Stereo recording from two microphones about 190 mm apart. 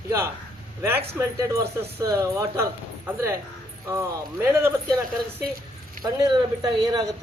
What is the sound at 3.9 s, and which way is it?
Speech, 15° right (ahead or behind).